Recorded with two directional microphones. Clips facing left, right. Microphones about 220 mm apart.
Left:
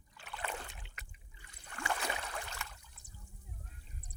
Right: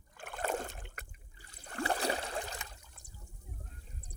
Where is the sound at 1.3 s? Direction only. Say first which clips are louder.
Right 9 dB; 35° right (ahead or behind).